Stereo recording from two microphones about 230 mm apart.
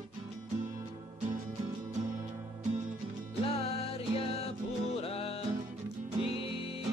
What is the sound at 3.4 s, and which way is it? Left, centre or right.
Music, left.